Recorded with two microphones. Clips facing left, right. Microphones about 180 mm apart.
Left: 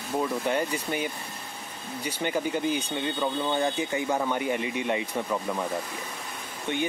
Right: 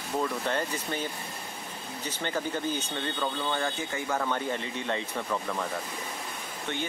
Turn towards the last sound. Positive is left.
turn(degrees=15)  # may be behind; listen again after turning